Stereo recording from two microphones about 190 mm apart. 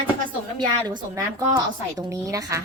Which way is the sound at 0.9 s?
20° right (ahead or behind).